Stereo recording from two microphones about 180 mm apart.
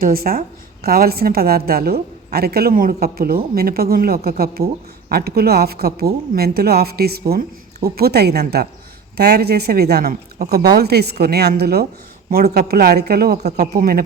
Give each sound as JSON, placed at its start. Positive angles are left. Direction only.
{"t": 0.0, "sound": "a woman's voice", "side_deg": -55}